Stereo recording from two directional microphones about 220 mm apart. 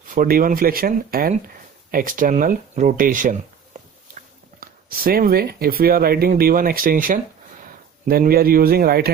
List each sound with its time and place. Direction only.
0.1 s speech: 40° right (ahead or behind)
4.6 s speech: 40° right (ahead or behind)